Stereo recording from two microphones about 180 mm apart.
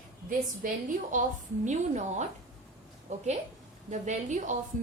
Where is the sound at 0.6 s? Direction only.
50° right (ahead or behind).